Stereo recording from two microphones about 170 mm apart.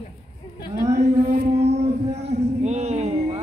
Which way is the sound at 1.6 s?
40° right (ahead or behind).